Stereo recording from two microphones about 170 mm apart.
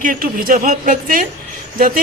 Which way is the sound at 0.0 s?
55° right (ahead or behind).